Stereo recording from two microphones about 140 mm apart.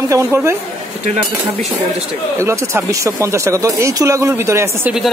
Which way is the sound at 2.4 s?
20° right (ahead or behind).